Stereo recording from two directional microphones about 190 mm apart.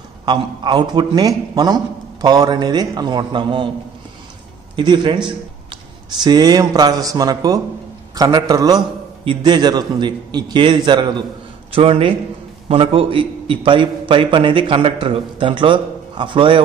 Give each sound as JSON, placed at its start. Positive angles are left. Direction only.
{"t": 0.2, "sound": "a man's voice", "side_deg": -25}
{"t": 4.7, "sound": "a man's voice", "side_deg": -25}